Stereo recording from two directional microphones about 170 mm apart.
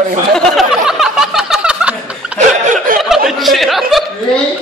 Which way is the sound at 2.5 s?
45° right (ahead or behind).